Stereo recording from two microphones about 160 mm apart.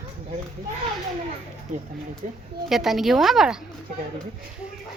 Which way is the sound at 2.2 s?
50° right (ahead or behind).